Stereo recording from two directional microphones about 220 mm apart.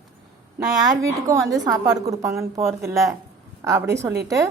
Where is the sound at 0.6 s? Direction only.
15° right (ahead or behind).